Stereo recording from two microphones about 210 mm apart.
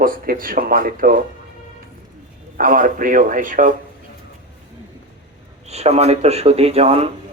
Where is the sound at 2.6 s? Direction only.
40° right (ahead or behind).